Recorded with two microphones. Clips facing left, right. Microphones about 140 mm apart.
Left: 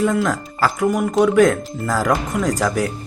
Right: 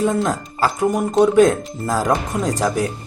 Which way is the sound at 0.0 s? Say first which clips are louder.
Even; 25° right (ahead or behind).